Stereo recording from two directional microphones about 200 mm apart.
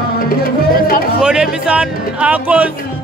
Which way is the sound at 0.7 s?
45° left (ahead or behind).